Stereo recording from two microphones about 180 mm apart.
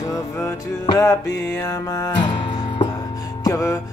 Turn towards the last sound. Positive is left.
turn(degrees=20)  # may be behind; listen again after turning